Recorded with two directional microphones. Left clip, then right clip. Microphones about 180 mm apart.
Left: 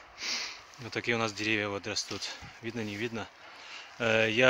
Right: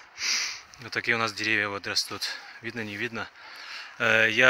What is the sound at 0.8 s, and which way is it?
Speech, centre (ahead or behind).